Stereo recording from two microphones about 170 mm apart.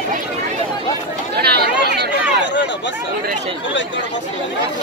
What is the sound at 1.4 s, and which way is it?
Chatter, 70° right (ahead or behind).